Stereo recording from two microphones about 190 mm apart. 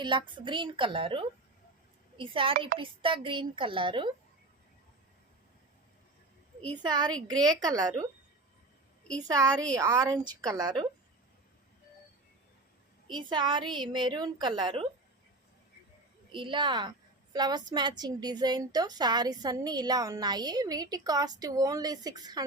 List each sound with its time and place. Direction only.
0.0 s a woman's voice: 25° right (ahead or behind)
6.8 s a woman's voice: 20° right (ahead or behind)
9.1 s a woman's voice: 20° right (ahead or behind)
13.1 s a woman's voice: 25° right (ahead or behind)
16.3 s a woman's voice: 25° right (ahead or behind)